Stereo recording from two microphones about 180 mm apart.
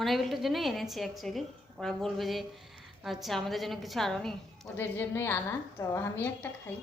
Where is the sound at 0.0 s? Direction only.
Centre (ahead or behind).